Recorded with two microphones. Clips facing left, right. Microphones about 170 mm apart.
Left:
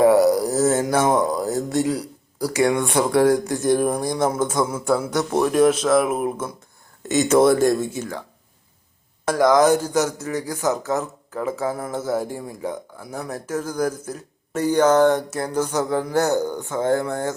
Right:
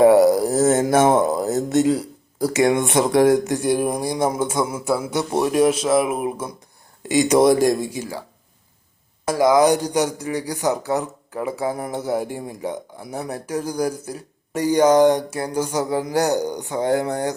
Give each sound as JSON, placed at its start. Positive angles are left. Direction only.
{"t": 0.0, "sound": "a sound", "side_deg": -25}
{"t": 3.7, "sound": "speech", "side_deg": -10}
{"t": 9.2, "sound": "speech", "side_deg": -5}